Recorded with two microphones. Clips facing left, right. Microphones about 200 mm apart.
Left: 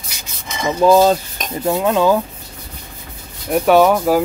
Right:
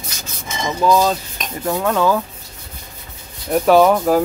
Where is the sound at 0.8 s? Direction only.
30° left (ahead or behind).